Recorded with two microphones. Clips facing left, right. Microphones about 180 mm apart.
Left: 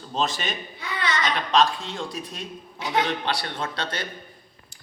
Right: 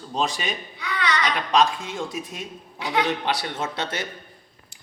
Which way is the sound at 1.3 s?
5° right (ahead or behind).